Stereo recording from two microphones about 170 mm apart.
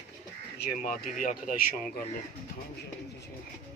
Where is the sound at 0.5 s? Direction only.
55° left (ahead or behind).